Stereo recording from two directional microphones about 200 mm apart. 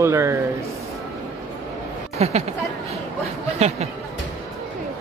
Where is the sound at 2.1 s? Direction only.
30° right (ahead or behind).